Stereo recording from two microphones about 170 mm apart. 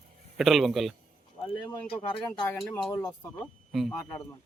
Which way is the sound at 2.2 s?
20° left (ahead or behind).